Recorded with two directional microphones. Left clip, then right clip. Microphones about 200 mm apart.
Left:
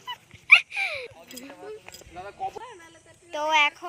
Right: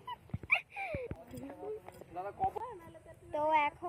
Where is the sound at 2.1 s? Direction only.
50° left (ahead or behind).